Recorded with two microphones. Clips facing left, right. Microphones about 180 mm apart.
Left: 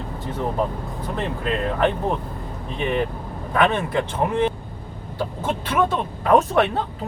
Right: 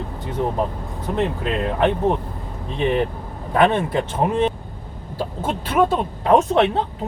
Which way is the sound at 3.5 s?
30° right (ahead or behind).